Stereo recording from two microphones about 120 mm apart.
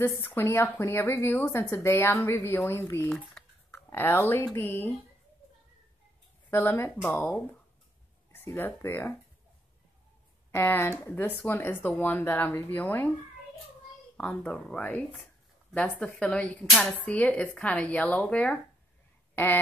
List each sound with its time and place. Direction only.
0.0 s a woman's voice: 20° left (ahead or behind)
3.1 s speech: 5° left (ahead or behind)
3.7 s speech: 20° left (ahead or behind)
6.5 s a woman's voice: 20° left (ahead or behind)
7.2 s speech: 5° left (ahead or behind)
8.3 s speech: 20° left (ahead or behind)
10.5 s speech: 20° left (ahead or behind)
14.1 s speech: 15° left (ahead or behind)